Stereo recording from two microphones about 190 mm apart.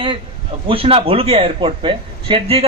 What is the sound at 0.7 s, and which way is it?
A man's voice, 30° right (ahead or behind).